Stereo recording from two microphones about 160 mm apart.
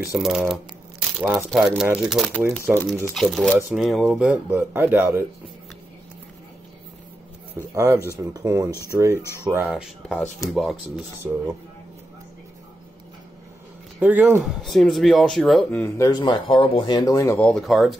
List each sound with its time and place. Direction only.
0.2 s speech: 5° right (ahead or behind)
7.7 s speech: 20° right (ahead or behind)
9.2 s speech: 15° left (ahead or behind)
9.5 s speech: 10° right (ahead or behind)
13.9 s speech: 10° right (ahead or behind)
15.8 s speech: 20° left (ahead or behind); by 17.9 s centre (ahead or behind)